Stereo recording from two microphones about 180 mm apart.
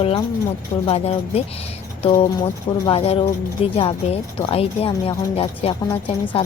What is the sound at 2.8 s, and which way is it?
Speech, 30° left (ahead or behind).